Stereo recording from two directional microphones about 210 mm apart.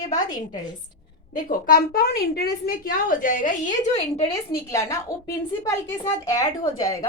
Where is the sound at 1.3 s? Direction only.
40° left (ahead or behind).